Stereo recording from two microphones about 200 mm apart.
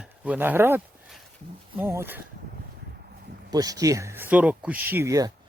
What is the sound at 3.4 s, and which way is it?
Speech, 20° right (ahead or behind).